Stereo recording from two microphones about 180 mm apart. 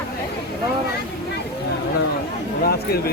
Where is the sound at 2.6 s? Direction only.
60° left (ahead or behind).